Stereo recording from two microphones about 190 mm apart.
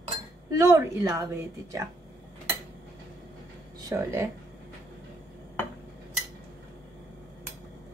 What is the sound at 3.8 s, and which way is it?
Speech, 15° right (ahead or behind).